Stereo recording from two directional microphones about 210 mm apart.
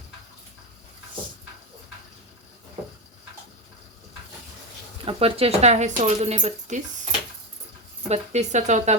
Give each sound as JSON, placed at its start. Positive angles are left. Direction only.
{"t": 5.0, "sound": "speech", "side_deg": -30}
{"t": 8.0, "sound": "speech", "side_deg": -30}